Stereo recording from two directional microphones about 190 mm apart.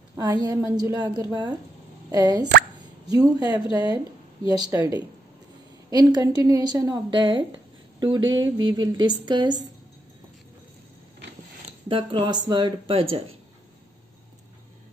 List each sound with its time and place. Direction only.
0.1 s a woman's voice: 20° right (ahead or behind)
11.9 s a woman's voice: 25° right (ahead or behind)